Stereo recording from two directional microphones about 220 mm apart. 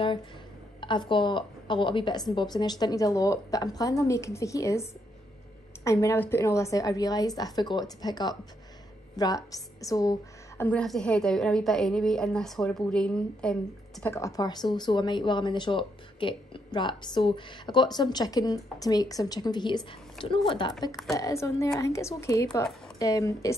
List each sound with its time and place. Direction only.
0.7 s a woman's voice: 20° left (ahead or behind)
5.9 s a woman's voice: 15° left (ahead or behind)
10.6 s a woman's voice: 5° left (ahead or behind)